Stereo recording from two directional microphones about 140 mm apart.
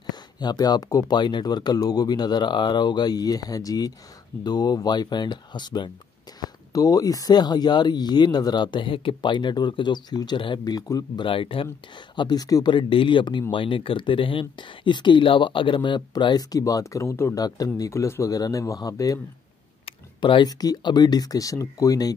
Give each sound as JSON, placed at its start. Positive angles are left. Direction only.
{"t": 0.1, "sound": "speech", "side_deg": 30}
{"t": 12.2, "sound": "speech", "side_deg": 30}
{"t": 20.2, "sound": "speech", "side_deg": 35}